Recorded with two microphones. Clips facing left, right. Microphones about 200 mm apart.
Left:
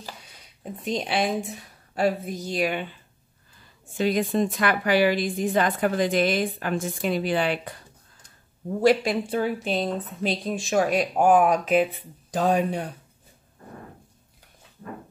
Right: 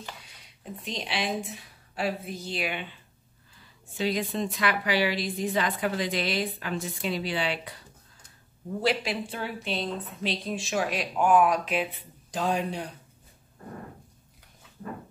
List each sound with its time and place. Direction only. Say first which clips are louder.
0.8 s a woman's voice: left 7 dB; 50° left (ahead or behind)
4.0 s a woman's voice: left 6 dB; 50° left (ahead or behind)
8.8 s a woman's voice: left 8 dB; 45° left (ahead or behind)